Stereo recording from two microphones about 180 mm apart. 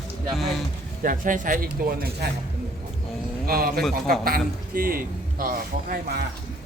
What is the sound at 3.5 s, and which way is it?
A man's voice, 55° right (ahead or behind).